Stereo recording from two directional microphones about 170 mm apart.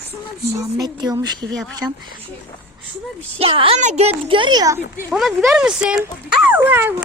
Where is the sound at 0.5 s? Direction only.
20° right (ahead or behind).